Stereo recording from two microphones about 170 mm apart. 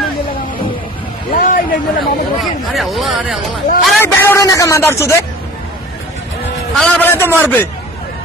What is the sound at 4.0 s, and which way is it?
Speech, 15° left (ahead or behind).